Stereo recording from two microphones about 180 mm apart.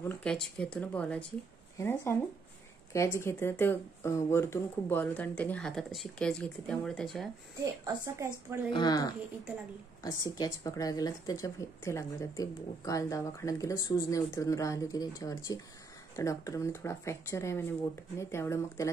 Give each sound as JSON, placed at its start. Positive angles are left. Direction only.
{"t": 0.0, "sound": "speech", "side_deg": 10}
{"t": 7.8, "sound": "a woman's voice", "side_deg": -15}
{"t": 8.7, "sound": "a woman's voice", "side_deg": 20}